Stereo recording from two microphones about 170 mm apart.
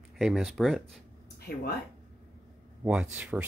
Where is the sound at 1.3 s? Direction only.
65° left (ahead or behind).